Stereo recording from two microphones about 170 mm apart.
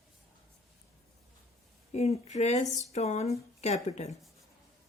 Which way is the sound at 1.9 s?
40° left (ahead or behind).